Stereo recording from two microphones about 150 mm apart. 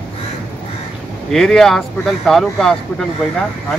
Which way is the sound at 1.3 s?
Centre (ahead or behind).